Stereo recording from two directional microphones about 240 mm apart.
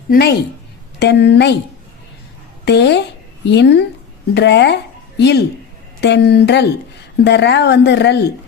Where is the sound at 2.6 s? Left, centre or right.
Left.